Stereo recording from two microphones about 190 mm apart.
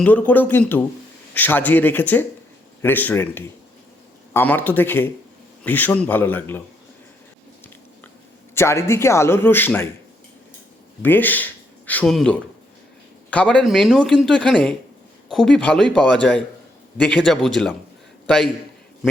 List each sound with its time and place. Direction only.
0.0 s a man's voice: 10° left (ahead or behind)
8.5 s a man's voice: 15° left (ahead or behind)
11.0 s speech: 10° left (ahead or behind)